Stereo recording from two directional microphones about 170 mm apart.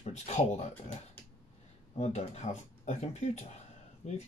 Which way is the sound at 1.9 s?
40° left (ahead or behind).